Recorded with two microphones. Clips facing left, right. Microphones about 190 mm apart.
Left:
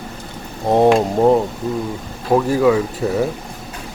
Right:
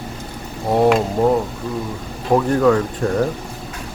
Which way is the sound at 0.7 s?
20° left (ahead or behind).